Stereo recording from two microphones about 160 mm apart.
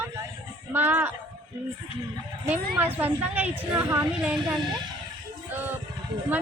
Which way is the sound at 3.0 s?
10° right (ahead or behind).